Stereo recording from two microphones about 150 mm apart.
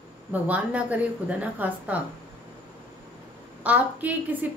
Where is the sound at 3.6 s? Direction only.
10° right (ahead or behind).